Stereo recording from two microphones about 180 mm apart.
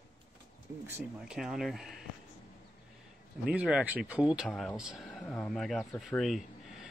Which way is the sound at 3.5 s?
5° right (ahead or behind).